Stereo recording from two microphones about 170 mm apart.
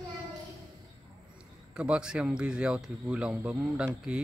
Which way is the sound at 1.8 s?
5° right (ahead or behind).